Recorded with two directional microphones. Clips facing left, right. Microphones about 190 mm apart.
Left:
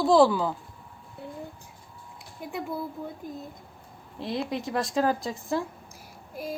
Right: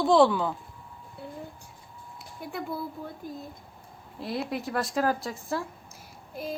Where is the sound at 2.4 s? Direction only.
20° left (ahead or behind).